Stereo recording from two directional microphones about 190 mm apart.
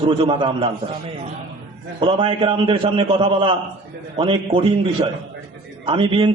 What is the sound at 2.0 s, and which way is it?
A man's voice, 25° right (ahead or behind).